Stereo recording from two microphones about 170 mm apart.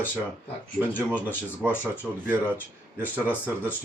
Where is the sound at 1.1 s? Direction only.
10° right (ahead or behind).